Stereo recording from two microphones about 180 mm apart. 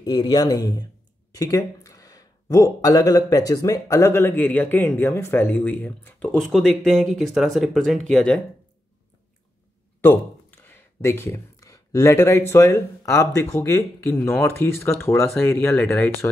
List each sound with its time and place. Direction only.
0.0 s speech: 25° left (ahead or behind)
6.4 s speech: centre (ahead or behind)
10.0 s speech: 10° left (ahead or behind)